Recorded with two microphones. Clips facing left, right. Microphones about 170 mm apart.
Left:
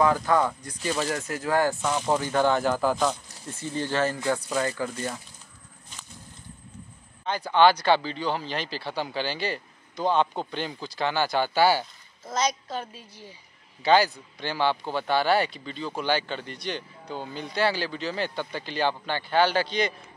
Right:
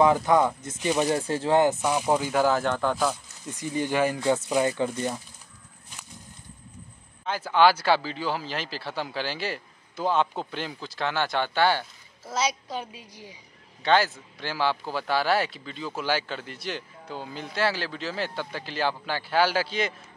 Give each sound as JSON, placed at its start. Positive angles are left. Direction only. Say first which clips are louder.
{"t": 0.0, "sound": "speech", "louder": "right 2 dB", "side_deg": -20}
{"t": 1.1, "sound": "speech", "louder": "right 3 dB", "side_deg": -30}
{"t": 3.4, "sound": "speech", "louder": "right 2 dB", "side_deg": -15}
{"t": 7.2, "sound": "speech", "louder": "left 1 dB", "side_deg": -5}
{"t": 12.3, "sound": "speech", "louder": "left 1 dB", "side_deg": -10}
{"t": 13.8, "sound": "speech", "louder": "left 2 dB", "side_deg": 0}